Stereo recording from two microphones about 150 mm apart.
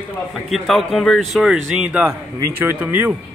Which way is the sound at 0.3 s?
Centre (ahead or behind).